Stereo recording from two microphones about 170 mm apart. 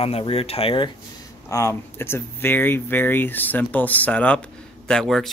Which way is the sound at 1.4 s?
20° left (ahead or behind).